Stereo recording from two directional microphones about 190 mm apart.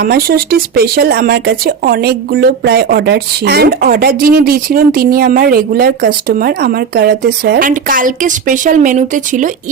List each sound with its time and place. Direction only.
0.0 s speech: 50° right (ahead or behind)